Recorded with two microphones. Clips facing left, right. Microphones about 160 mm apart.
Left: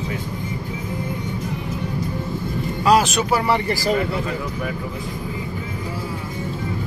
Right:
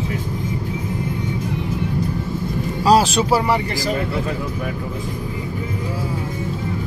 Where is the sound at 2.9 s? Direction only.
30° right (ahead or behind).